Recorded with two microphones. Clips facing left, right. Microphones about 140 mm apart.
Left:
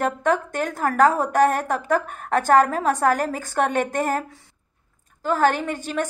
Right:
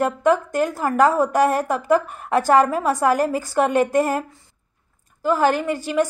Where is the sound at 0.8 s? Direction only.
55° left (ahead or behind).